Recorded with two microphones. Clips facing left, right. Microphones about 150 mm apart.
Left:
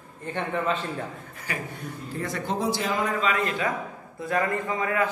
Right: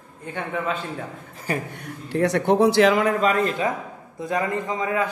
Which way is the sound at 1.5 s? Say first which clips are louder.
Right 7 dB; 40° right (ahead or behind).